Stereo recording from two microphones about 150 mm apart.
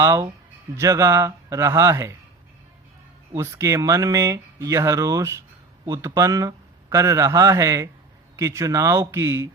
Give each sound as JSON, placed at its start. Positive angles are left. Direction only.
{"t": 0.0, "sound": "speech", "side_deg": -20}
{"t": 3.3, "sound": "speech", "side_deg": -20}